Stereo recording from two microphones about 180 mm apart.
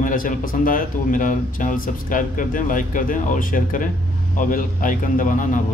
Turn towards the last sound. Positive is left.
turn(degrees=45)  # may be behind; listen again after turning